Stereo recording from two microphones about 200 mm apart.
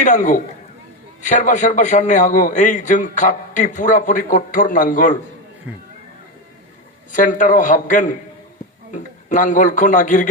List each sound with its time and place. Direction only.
0.0 s a man's voice: 40° left (ahead or behind)
5.7 s speech: 5° right (ahead or behind)
7.1 s a man's voice: 40° left (ahead or behind)